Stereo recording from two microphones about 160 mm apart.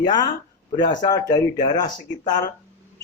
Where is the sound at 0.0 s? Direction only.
25° left (ahead or behind).